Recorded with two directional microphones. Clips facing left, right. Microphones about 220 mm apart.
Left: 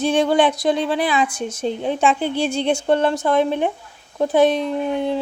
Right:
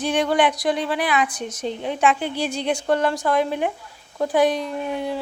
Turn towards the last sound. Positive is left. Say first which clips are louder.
# left 5 dB
turn(degrees=25)  # may be behind; listen again after turning